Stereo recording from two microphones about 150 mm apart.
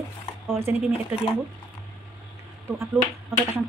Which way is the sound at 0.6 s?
15° right (ahead or behind).